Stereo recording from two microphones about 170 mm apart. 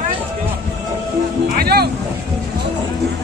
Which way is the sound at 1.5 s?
65° right (ahead or behind).